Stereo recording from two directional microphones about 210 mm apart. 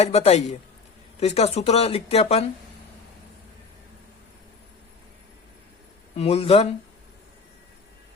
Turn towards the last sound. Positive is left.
turn(degrees=30)  # may be behind; listen again after turning